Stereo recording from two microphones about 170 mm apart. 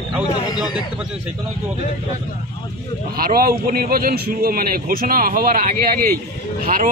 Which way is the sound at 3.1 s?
60° right (ahead or behind).